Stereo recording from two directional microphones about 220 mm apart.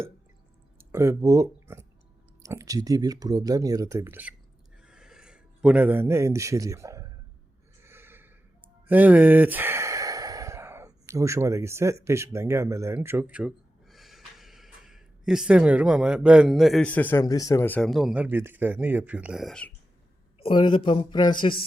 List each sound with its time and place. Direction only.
0.8 s speech: 10° right (ahead or behind)
4.8 s a sound: 5° right (ahead or behind)
7.8 s snort: 10° right (ahead or behind)
8.9 s sigh: 5° right (ahead or behind)
12.0 s speech: 10° right (ahead or behind); by 19.7 s 5° left (ahead or behind)
20.4 s speech: 20° left (ahead or behind)